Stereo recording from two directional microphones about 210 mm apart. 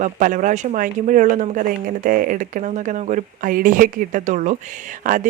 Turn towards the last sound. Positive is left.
turn(degrees=-40)  # may be behind; listen again after turning